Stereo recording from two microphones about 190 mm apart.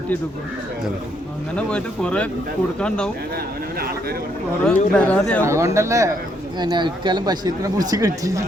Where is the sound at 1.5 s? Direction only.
5° left (ahead or behind).